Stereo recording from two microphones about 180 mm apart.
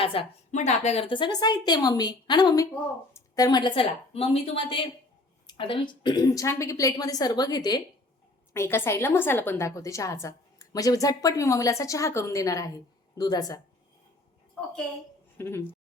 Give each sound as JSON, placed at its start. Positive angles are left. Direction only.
{"t": 0.0, "sound": "a woman's voice", "side_deg": 30}
{"t": 15.4, "sound": "a woman's voice", "side_deg": 15}